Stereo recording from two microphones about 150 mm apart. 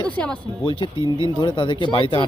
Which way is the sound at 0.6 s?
35° left (ahead or behind).